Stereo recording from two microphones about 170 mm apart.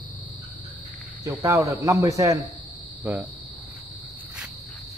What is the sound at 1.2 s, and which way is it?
Speech, 20° right (ahead or behind).